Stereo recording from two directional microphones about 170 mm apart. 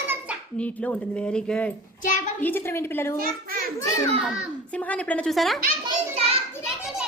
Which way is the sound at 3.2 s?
60° right (ahead or behind).